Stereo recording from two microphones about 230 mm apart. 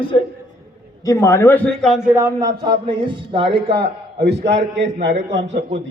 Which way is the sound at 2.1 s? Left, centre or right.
Centre.